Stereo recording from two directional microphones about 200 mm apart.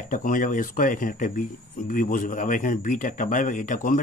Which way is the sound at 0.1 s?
40° left (ahead or behind).